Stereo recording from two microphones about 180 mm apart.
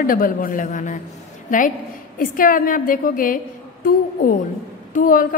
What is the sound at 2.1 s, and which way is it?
A woman's voice, 50° left (ahead or behind).